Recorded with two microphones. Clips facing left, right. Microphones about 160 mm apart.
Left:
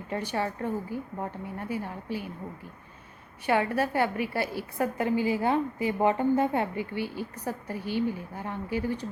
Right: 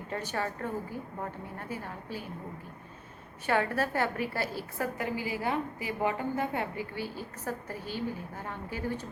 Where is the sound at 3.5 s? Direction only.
15° left (ahead or behind).